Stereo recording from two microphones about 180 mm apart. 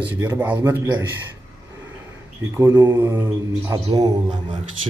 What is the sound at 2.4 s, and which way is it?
A man's voice, 15° right (ahead or behind).